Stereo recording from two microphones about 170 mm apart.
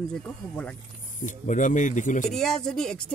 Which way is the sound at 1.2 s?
50° left (ahead or behind).